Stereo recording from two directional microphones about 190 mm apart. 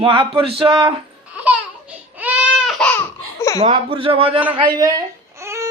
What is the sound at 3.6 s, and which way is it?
Speech, 30° right (ahead or behind).